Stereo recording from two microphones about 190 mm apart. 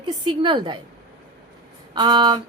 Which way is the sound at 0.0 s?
25° right (ahead or behind).